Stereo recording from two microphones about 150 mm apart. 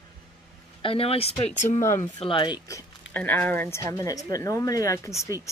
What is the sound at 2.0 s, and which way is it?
Speech, 35° left (ahead or behind).